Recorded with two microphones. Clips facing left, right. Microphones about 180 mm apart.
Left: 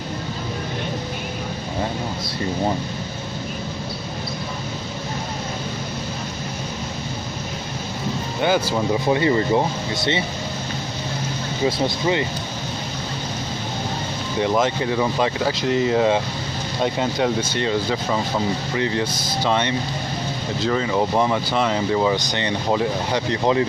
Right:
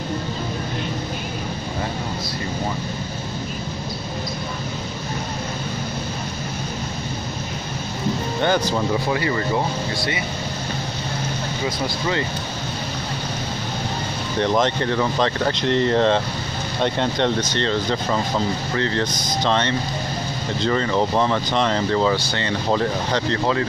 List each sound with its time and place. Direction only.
8.4 s speech: 5° left (ahead or behind)
9.1 s speech: 25° left (ahead or behind)
11.6 s speech: 25° left (ahead or behind)
14.4 s speech: 5° left (ahead or behind)